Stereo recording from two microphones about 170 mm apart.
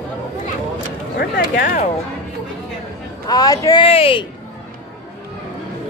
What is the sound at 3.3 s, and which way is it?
Speech, 20° left (ahead or behind).